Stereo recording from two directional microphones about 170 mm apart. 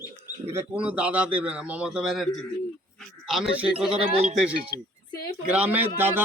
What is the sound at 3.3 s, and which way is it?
Speech, 5° right (ahead or behind).